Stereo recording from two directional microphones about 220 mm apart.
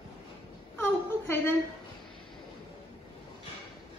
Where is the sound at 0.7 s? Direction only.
10° left (ahead or behind).